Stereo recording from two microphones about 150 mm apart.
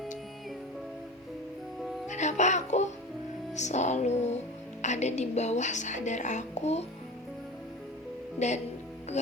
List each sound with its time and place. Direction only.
2.0 s music: 50° left (ahead or behind)
4.8 s a woman's voice: 50° left (ahead or behind)
8.4 s speech: 50° left (ahead or behind)